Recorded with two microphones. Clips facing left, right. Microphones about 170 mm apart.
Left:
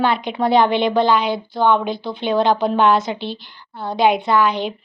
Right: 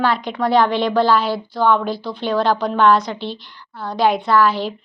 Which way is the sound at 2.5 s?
25° left (ahead or behind).